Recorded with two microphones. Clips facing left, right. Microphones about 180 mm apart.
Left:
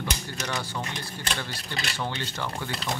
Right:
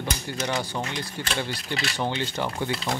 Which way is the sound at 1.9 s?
20° right (ahead or behind).